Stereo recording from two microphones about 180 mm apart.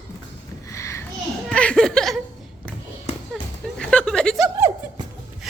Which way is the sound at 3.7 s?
5° left (ahead or behind).